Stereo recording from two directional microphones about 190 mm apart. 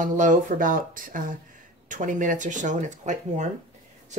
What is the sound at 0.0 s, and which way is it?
Speech, 40° right (ahead or behind).